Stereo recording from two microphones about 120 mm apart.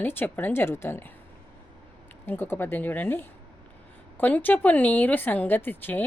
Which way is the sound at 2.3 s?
15° left (ahead or behind).